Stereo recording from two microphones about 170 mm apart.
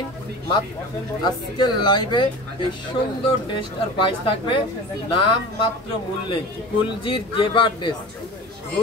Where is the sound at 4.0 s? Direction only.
30° left (ahead or behind).